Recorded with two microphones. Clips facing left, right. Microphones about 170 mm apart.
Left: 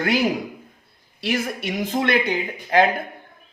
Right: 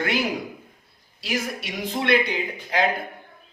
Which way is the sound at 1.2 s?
55° left (ahead or behind).